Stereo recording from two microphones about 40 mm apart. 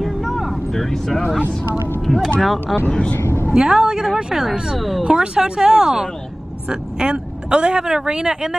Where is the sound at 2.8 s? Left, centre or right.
Left.